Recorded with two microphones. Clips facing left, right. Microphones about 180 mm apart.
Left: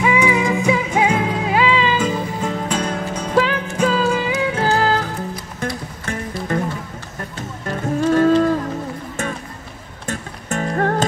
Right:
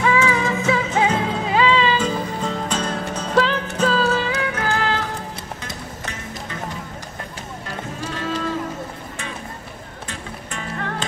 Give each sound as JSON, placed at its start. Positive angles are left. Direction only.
{"t": 0.0, "sound": "music", "side_deg": 15}
{"t": 4.4, "sound": "music", "side_deg": 30}
{"t": 6.5, "sound": "music", "side_deg": 50}
{"t": 8.1, "sound": "a sound", "side_deg": 45}
{"t": 10.0, "sound": "music", "side_deg": 45}